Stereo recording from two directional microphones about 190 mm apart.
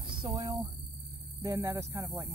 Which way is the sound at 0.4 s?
25° right (ahead or behind).